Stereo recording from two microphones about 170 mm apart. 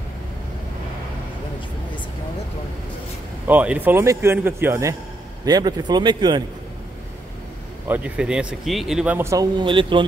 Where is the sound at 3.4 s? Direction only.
10° right (ahead or behind); by 6.4 s 25° right (ahead or behind).